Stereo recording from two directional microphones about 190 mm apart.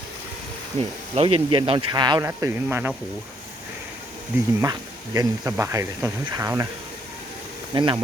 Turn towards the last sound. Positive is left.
turn(degrees=-20)  # may be behind; listen again after turning